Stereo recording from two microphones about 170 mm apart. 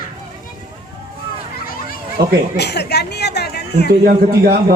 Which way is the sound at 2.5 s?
75° left (ahead or behind).